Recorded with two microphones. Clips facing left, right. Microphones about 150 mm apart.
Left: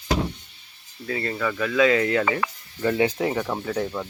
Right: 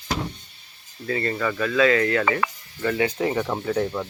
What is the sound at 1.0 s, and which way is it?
Speech, 5° left (ahead or behind).